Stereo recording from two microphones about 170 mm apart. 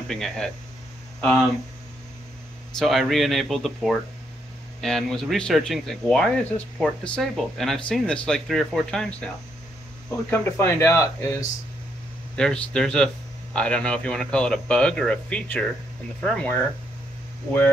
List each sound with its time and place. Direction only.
0.1 s speech: centre (ahead or behind)
2.8 s speech: centre (ahead or behind)
10.3 s speech: 15° left (ahead or behind)
12.4 s speech: 5° left (ahead or behind)